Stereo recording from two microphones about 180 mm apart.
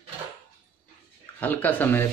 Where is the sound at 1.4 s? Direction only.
10° left (ahead or behind).